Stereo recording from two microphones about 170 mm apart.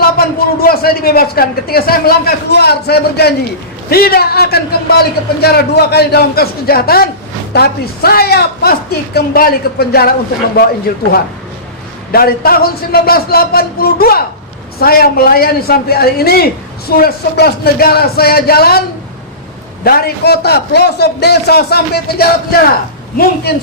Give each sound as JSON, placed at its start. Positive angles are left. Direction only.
{"t": 0.0, "sound": "a man's voice", "side_deg": 60}
{"t": 12.1, "sound": "a man's voice", "side_deg": 60}
{"t": 19.8, "sound": "a man's voice", "side_deg": 65}